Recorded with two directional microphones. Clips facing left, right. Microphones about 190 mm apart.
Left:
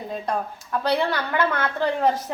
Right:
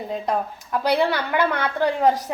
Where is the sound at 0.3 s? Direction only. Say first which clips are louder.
Right 2 dB; 15° right (ahead or behind).